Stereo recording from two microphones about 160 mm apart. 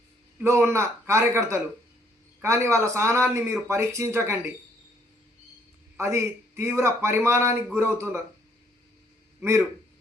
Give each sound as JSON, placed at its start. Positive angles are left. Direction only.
{"t": 0.3, "sound": "speech", "side_deg": -15}
{"t": 6.0, "sound": "speech", "side_deg": -15}
{"t": 9.4, "sound": "speech", "side_deg": -15}